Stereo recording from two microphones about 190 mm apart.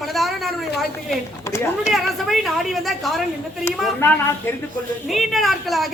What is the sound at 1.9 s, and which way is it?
A woman's voice, centre (ahead or behind).